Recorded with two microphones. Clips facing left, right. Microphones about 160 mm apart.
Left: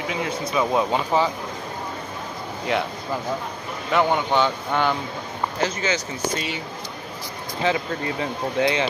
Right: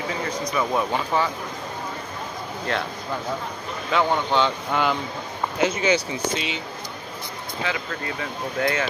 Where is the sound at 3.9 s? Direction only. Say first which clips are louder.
Left 1 dB; 10° left (ahead or behind).